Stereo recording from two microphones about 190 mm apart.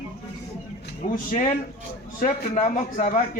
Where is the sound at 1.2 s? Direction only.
40° left (ahead or behind).